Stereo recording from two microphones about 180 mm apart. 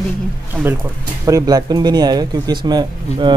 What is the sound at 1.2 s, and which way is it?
Speech, 20° right (ahead or behind).